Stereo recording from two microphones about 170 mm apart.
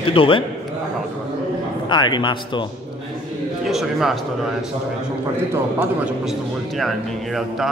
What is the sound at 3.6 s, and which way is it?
Speech, centre (ahead or behind).